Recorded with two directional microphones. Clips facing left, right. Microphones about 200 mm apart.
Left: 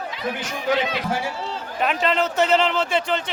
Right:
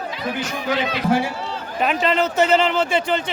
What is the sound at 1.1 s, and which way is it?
Speech, 60° right (ahead or behind).